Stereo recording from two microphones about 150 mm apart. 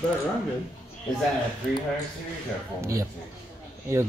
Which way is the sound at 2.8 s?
20° right (ahead or behind).